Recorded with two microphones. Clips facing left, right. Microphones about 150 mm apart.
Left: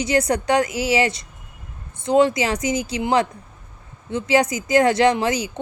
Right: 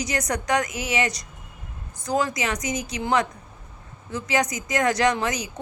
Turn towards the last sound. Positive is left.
turn(degrees=30)  # may be behind; listen again after turning